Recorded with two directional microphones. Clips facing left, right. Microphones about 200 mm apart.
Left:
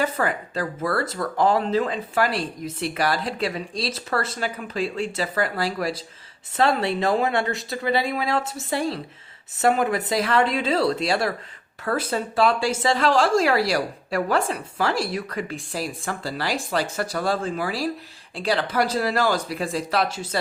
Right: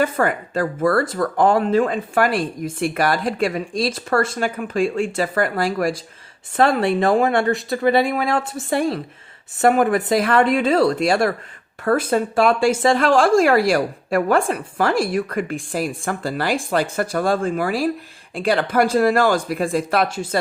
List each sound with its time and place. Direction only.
0.0 s speech: 50° right (ahead or behind)